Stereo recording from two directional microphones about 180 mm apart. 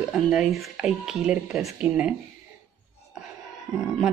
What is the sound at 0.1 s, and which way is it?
Speech, centre (ahead or behind).